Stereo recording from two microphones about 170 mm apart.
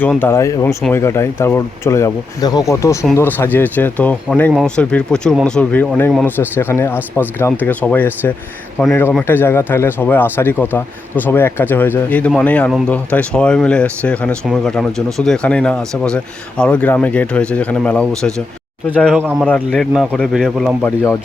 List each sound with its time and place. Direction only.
0.0 s speech: 10° left (ahead or behind)
20.8 s speech: 15° left (ahead or behind)